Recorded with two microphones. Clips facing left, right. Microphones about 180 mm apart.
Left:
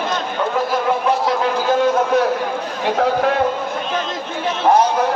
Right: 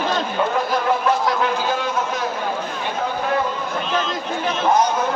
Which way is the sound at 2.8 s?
80° left.